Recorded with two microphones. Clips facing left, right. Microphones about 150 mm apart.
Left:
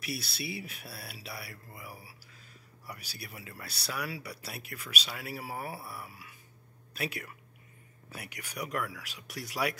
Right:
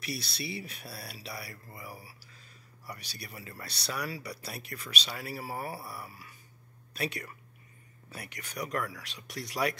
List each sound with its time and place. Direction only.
0.0 s speech: 5° left (ahead or behind)